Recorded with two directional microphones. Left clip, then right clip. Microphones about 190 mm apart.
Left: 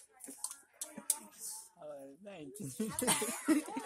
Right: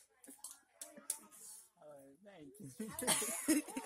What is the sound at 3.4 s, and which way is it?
Cough, 50° right (ahead or behind).